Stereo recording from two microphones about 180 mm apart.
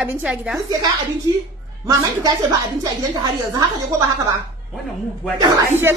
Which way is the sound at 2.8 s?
20° right (ahead or behind).